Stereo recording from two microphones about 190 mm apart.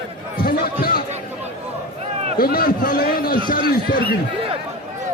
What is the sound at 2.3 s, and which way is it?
A man's voice, 50° left (ahead or behind).